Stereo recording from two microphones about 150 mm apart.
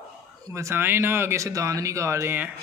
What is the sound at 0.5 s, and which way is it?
Speech, 20° right (ahead or behind).